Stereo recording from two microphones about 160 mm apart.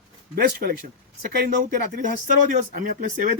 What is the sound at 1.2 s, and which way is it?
Speech, 55° right (ahead or behind).